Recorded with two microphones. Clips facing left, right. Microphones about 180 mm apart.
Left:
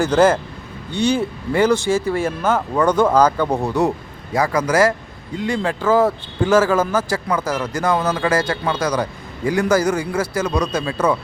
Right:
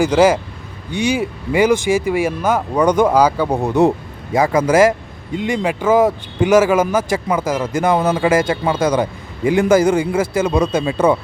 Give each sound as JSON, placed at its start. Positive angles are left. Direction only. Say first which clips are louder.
{"t": 0.0, "sound": "speech", "louder": "right 2 dB", "side_deg": -10}
{"t": 3.6, "sound": "speech", "louder": "right 5 dB", "side_deg": -20}